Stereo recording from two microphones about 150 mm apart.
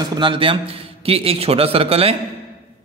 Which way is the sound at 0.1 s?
35° right (ahead or behind).